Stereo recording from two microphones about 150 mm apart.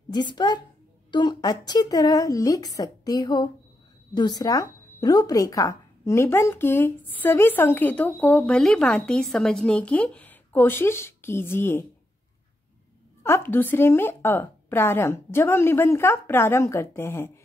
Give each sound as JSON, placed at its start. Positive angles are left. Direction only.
{"t": 0.1, "sound": "a woman's voice", "side_deg": 30}
{"t": 13.2, "sound": "speech", "side_deg": 15}